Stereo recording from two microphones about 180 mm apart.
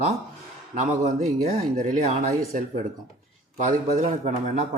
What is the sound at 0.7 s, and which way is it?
Speech, 40° right (ahead or behind).